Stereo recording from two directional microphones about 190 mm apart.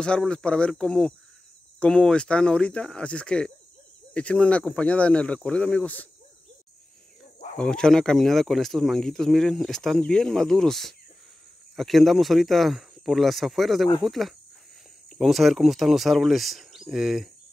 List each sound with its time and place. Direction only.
0.0 s speech: 5° left (ahead or behind)
7.5 s speech: 5° left (ahead or behind)